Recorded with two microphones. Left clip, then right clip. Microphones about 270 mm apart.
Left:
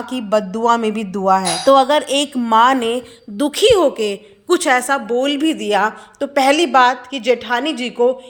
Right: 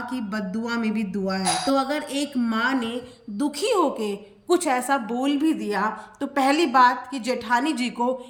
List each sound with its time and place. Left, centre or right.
0.1 s a woman's voice: centre